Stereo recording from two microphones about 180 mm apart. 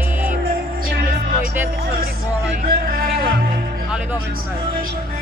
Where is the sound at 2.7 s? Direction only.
55° right (ahead or behind).